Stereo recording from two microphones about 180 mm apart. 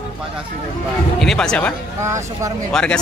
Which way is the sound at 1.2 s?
5° left (ahead or behind).